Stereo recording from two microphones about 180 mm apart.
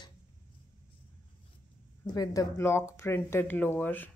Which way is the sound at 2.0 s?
20° left (ahead or behind).